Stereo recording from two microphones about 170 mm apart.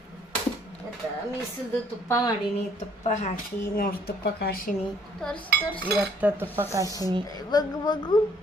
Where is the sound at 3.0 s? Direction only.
40° left (ahead or behind).